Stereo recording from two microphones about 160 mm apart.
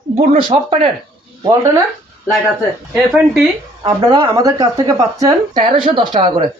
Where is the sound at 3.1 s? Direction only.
5° right (ahead or behind).